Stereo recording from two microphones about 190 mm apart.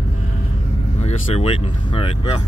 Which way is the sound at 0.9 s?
35° left (ahead or behind).